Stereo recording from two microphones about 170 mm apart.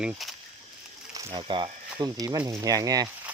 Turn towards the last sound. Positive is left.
turn(degrees=-20)  # may be behind; listen again after turning